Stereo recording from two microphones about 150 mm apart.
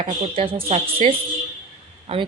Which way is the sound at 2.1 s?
40° right (ahead or behind).